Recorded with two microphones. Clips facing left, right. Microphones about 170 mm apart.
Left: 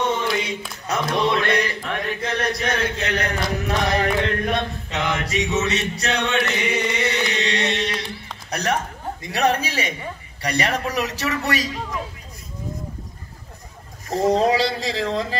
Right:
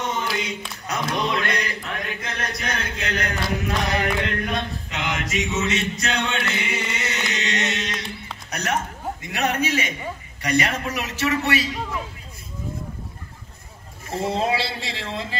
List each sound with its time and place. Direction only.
0.0 s a sound: 30° left (ahead or behind)
0.8 s chant: 30° left (ahead or behind)
8.5 s music: 35° left (ahead or behind)
9.2 s chant: 35° left (ahead or behind)
14.0 s chant: 40° left (ahead or behind)